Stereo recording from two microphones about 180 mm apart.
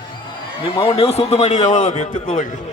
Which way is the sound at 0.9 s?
35° left (ahead or behind).